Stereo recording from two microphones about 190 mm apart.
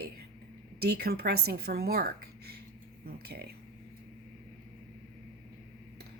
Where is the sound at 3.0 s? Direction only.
55° right (ahead or behind).